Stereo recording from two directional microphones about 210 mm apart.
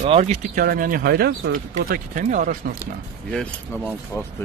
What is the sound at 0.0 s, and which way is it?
Speech, 30° right (ahead or behind).